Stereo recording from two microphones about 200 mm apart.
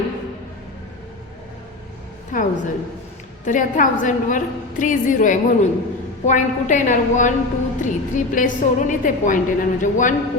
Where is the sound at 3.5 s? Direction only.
40° left (ahead or behind).